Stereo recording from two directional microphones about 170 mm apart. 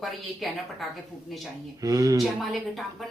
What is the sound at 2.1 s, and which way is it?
Speech, centre (ahead or behind).